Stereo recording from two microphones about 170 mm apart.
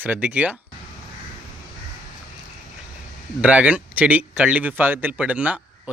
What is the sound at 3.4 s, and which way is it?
A man's voice, 10° right (ahead or behind).